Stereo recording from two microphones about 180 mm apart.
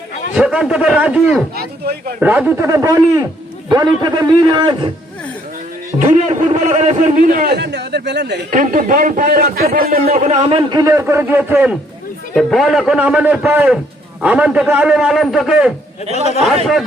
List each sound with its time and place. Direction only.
0.3 s a man's voice: 5° right (ahead or behind)
1.5 s speech: 60° right (ahead or behind)
2.2 s a man's voice: 10° right (ahead or behind); by 4.9 s 25° right (ahead or behind)
6.0 s a man's voice: 40° right (ahead or behind); by 8.4 s 70° right (ahead or behind)
8.4 s a man's voice: 45° right (ahead or behind)
10.2 s a man's voice: 40° right (ahead or behind); by 15.7 s 5° right (ahead or behind)